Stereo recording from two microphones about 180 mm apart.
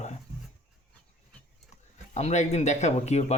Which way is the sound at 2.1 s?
40° left (ahead or behind).